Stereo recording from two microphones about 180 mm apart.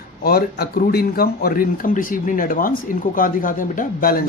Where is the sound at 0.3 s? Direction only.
60° left (ahead or behind).